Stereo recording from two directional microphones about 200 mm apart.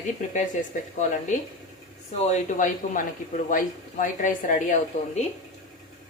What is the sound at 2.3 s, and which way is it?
A woman's voice, 40° left (ahead or behind).